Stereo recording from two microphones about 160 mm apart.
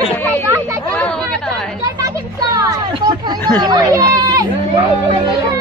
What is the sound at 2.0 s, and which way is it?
Children playing, 20° right (ahead or behind).